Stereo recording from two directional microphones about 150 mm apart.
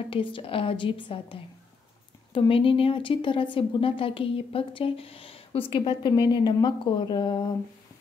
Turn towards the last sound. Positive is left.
turn(degrees=30)  # may be behind; listen again after turning